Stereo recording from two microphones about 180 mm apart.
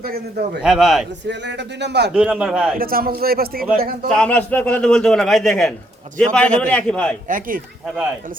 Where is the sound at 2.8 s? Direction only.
55° right (ahead or behind).